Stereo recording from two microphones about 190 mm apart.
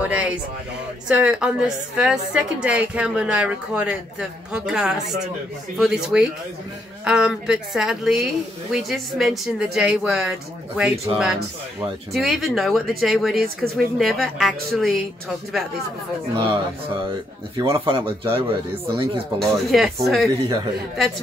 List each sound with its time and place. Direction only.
0.1 s a sound: 5° right (ahead or behind)
1.0 s a woman's voice: 5° right (ahead or behind)
17.6 s speech: 30° right (ahead or behind)
19.3 s speech: centre (ahead or behind)